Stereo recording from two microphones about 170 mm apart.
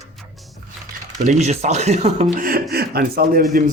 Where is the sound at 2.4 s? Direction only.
60° right (ahead or behind).